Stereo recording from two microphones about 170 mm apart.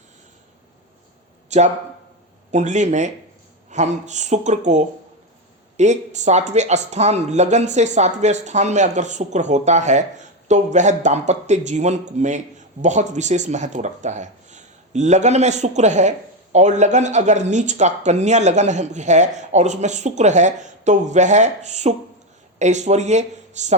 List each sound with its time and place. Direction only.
1.5 s speech: 45° right (ahead or behind)